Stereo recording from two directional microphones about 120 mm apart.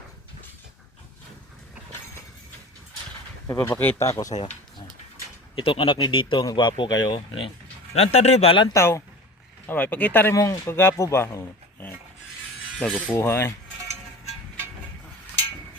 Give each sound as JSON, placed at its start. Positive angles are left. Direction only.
{"t": 3.4, "sound": "speech", "side_deg": 20}
{"t": 4.0, "sound": "speech", "side_deg": 30}
{"t": 4.3, "sound": "speech", "side_deg": 85}
{"t": 5.5, "sound": "speech", "side_deg": 50}
{"t": 7.9, "sound": "speech", "side_deg": 60}
{"t": 8.7, "sound": "speech", "side_deg": 25}
{"t": 10.3, "sound": "speech", "side_deg": 25}
{"t": 12.8, "sound": "speech", "side_deg": 10}
{"t": 13.1, "sound": "speech", "side_deg": 20}